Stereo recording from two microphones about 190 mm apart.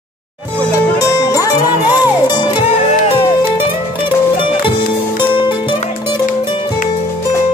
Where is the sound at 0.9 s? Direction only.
20° left (ahead or behind).